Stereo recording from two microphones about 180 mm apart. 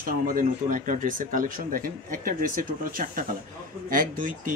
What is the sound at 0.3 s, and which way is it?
Speech, 50° right (ahead or behind).